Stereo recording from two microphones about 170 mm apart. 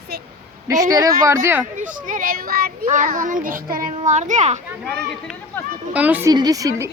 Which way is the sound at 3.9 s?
45° right (ahead or behind).